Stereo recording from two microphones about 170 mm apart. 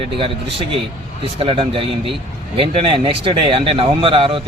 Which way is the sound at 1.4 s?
35° right (ahead or behind).